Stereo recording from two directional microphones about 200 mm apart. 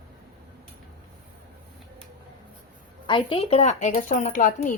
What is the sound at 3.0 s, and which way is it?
A woman's voice, 25° left (ahead or behind).